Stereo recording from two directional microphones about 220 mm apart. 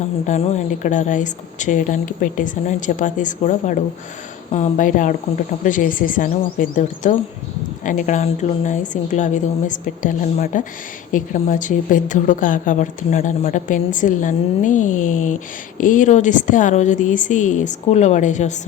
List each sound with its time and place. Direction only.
0.3 s a woman's voice: 30° left (ahead or behind)